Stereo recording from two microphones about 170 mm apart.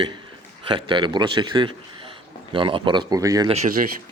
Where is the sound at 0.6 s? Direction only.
30° right (ahead or behind).